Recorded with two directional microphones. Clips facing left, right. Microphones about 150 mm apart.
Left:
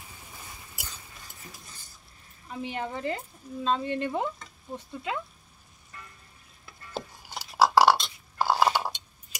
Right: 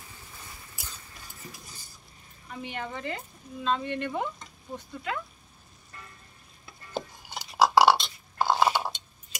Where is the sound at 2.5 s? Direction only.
35° left (ahead or behind).